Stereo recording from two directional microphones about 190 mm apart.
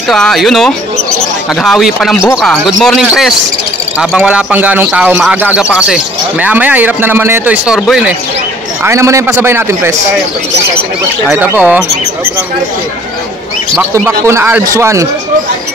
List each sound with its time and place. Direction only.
0.1 s a man's voice: centre (ahead or behind)
8.8 s a man's voice: 15° right (ahead or behind)
11.2 s a man's voice: 10° right (ahead or behind)
13.7 s a man's voice: 15° right (ahead or behind)